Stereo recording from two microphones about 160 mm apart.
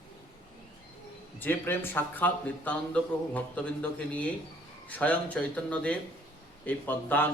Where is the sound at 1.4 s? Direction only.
15° left (ahead or behind).